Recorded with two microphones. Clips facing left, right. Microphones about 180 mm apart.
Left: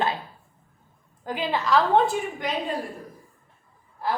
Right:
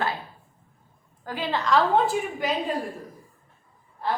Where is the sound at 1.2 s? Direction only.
15° left (ahead or behind).